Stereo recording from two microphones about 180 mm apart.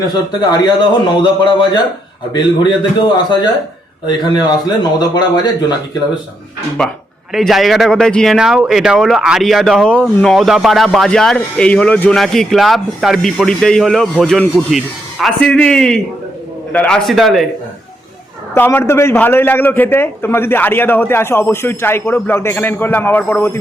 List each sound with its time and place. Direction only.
0.6 s speech: 25° left (ahead or behind)
6.8 s speech: 5° left (ahead or behind)
18.5 s a man's voice: 10° left (ahead or behind)